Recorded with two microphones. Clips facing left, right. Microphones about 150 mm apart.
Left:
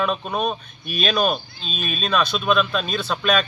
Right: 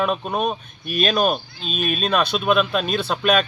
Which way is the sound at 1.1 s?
5° right (ahead or behind).